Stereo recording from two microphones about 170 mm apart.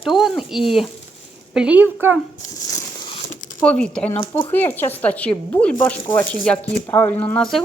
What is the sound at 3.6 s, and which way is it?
A woman's voice, 5° left (ahead or behind).